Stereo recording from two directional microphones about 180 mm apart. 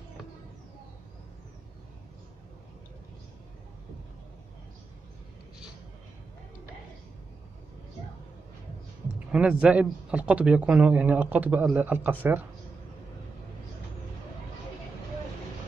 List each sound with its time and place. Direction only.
9.3 s speech: 5° right (ahead or behind)